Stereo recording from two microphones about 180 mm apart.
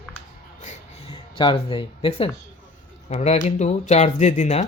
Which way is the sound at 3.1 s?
40° left (ahead or behind).